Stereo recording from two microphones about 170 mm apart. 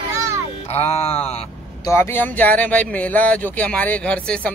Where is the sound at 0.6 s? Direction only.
35° left (ahead or behind).